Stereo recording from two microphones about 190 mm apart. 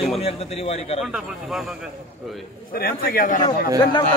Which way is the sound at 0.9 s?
Centre (ahead or behind).